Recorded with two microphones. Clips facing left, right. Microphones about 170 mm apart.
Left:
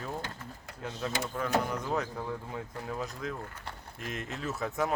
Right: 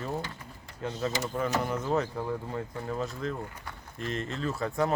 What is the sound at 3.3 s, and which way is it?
Speech, 10° right (ahead or behind).